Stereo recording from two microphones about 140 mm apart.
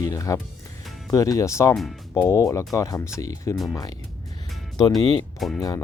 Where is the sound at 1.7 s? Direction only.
Centre (ahead or behind).